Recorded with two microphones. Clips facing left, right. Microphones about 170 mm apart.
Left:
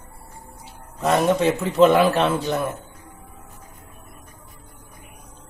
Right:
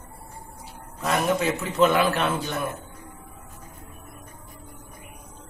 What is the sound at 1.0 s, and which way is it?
A man's voice, 30° left (ahead or behind).